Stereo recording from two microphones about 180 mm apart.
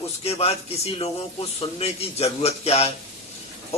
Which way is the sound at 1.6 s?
35° left (ahead or behind).